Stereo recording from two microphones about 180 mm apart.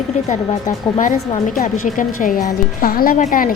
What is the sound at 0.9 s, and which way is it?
A woman's voice, 45° left (ahead or behind).